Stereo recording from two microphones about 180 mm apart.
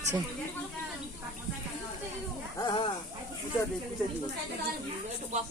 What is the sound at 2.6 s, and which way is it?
Dog, 25° left (ahead or behind).